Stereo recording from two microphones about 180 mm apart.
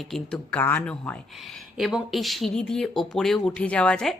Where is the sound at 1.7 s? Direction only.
Centre (ahead or behind).